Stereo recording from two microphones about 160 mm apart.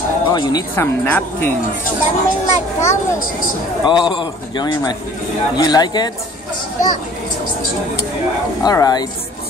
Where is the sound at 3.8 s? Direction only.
30° left (ahead or behind).